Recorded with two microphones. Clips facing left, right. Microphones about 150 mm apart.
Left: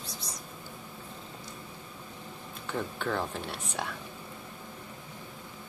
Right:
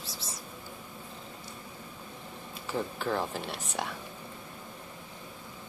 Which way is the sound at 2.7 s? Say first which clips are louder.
Right 1 dB; centre (ahead or behind).